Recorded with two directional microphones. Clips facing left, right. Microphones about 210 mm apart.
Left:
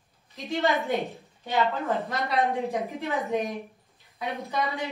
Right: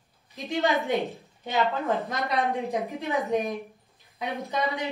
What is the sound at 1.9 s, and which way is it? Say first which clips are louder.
Speech: even; 15° right (ahead or behind).